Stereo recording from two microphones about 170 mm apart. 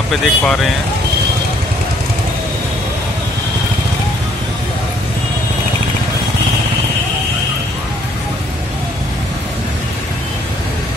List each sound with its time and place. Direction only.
0.1 s speech: 5° left (ahead or behind)